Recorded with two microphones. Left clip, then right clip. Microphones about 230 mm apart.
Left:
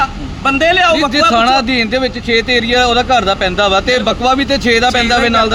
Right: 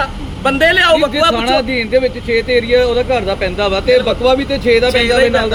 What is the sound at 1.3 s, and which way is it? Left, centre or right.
Speech, left.